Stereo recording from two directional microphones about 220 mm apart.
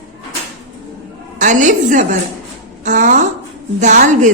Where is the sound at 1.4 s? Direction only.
35° right (ahead or behind).